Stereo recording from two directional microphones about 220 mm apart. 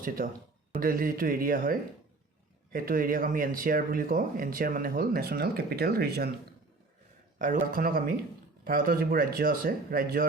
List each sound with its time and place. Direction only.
0.2 s speech: 40° right (ahead or behind)
7.3 s speech: 35° right (ahead or behind)